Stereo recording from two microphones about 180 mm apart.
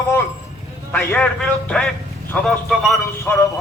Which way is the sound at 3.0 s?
15° left (ahead or behind).